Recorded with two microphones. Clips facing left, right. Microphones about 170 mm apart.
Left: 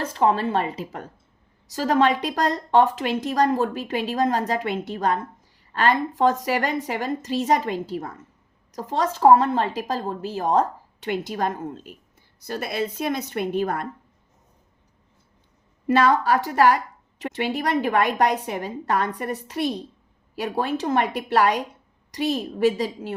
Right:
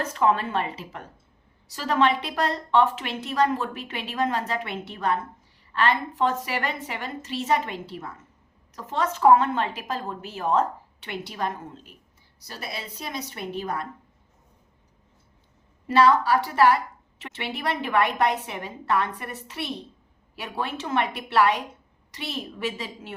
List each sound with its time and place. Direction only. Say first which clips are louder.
0.0 s a woman's voice: left 2 dB; 30° left (ahead or behind); by 13.8 s 50° left (ahead or behind)
15.9 s a woman's voice: left 1 dB; 50° left (ahead or behind)